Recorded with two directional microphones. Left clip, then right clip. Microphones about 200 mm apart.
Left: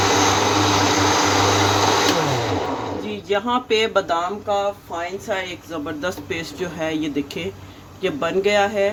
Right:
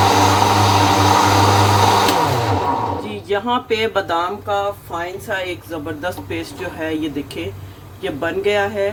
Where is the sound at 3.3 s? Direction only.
5° left (ahead or behind).